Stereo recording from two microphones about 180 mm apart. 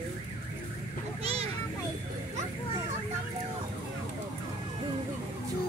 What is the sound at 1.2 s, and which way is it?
Vehicle, 35° right (ahead or behind).